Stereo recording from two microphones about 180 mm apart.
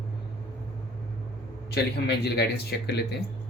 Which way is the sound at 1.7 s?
65° left (ahead or behind).